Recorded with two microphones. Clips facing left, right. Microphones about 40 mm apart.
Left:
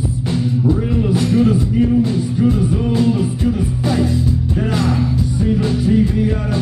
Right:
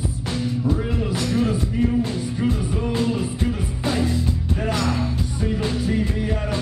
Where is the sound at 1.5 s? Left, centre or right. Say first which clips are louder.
Left 6 dB; right.